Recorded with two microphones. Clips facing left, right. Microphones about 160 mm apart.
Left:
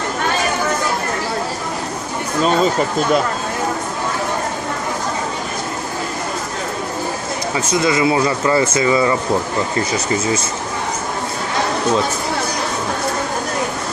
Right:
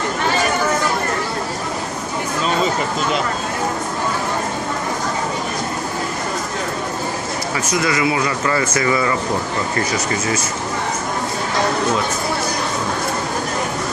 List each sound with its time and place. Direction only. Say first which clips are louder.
7.5 s speech: left 3 dB; 25° left (ahead or behind)